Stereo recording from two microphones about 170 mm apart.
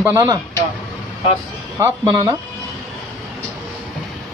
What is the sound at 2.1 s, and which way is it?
Speech, 25° right (ahead or behind).